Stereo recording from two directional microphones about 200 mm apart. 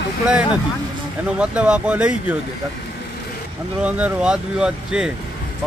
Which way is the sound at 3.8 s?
5° right (ahead or behind).